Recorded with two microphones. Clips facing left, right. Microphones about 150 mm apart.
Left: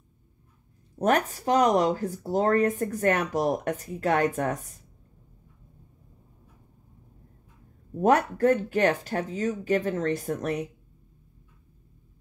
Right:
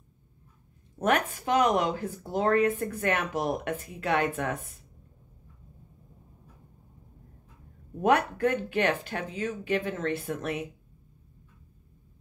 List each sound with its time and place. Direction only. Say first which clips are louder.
0.9 s speech: left 2 dB; 35° left (ahead or behind)
8.0 s speech: left 3 dB; 40° left (ahead or behind)